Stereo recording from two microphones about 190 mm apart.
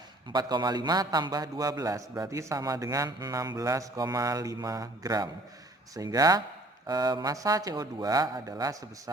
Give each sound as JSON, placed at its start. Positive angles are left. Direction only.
{"t": 0.3, "sound": "a man's voice", "side_deg": -20}